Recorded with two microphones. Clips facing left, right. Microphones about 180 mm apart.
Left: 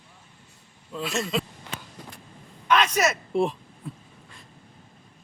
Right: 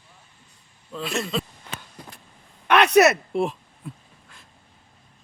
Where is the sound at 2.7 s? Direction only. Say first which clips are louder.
Right 6 dB; 65° right (ahead or behind).